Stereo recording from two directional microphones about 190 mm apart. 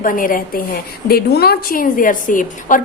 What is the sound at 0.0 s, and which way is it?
A woman's voice, 45° left (ahead or behind).